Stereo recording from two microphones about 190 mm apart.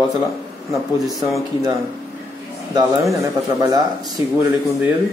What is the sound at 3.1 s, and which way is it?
Speech, 20° right (ahead or behind).